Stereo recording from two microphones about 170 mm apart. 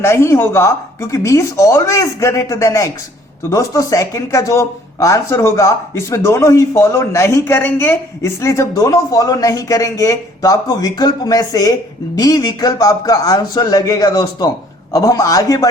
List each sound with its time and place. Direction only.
0.0 s speech: 15° left (ahead or behind)